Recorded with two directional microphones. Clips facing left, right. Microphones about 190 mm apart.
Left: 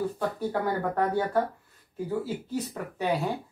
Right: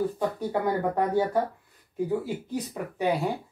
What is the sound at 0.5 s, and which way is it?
Speech, 15° right (ahead or behind).